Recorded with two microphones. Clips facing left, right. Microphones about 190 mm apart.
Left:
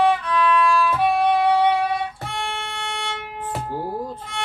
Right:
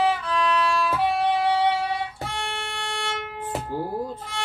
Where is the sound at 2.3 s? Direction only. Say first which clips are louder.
Left 2 dB; centre (ahead or behind).